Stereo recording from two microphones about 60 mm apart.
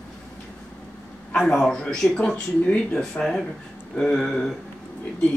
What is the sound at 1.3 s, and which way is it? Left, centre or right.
Speech, centre.